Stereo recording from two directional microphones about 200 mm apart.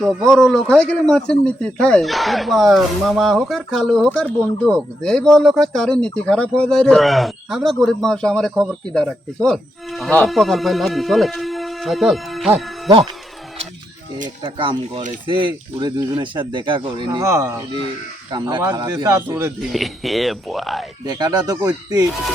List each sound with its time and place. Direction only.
0.3 s speech: 5° left (ahead or behind)
14.4 s a man's voice: 25° right (ahead or behind)
19.7 s speech: centre (ahead or behind)
21.1 s speech: 20° right (ahead or behind)